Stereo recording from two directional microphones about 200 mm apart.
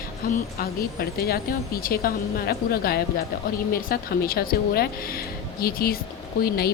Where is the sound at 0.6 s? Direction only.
50° left (ahead or behind).